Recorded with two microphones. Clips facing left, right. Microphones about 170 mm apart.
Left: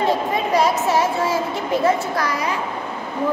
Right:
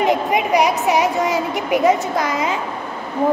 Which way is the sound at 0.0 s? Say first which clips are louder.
Right 3 dB; 15° right (ahead or behind).